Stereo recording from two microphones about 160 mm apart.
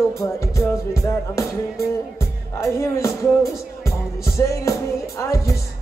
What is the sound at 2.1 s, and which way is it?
Speech, 15° left (ahead or behind).